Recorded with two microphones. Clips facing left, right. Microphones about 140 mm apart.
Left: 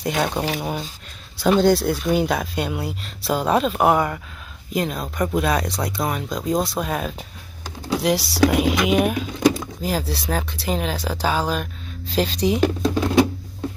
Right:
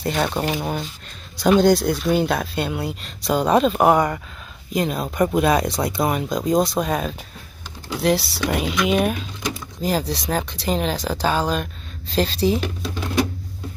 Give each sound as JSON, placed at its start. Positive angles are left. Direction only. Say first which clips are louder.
{"t": 0.0, "sound": "speech", "louder": "even", "side_deg": 10}
{"t": 0.4, "sound": "speech", "louder": "right 1 dB", "side_deg": 0}
{"t": 12.6, "sound": "speech", "louder": "left 8 dB", "side_deg": 40}